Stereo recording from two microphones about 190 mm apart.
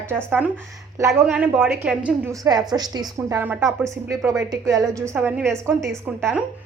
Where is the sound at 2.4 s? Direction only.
20° right (ahead or behind).